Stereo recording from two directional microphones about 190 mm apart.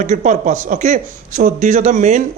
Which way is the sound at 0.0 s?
40° right (ahead or behind).